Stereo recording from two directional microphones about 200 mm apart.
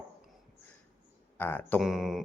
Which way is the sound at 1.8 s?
Centre (ahead or behind).